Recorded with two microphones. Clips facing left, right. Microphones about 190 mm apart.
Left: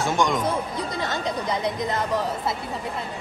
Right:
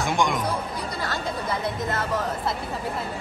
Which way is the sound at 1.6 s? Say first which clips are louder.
Left 2 dB; 15° left (ahead or behind).